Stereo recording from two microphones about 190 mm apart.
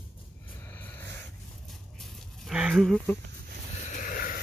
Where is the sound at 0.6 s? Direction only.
10° left (ahead or behind).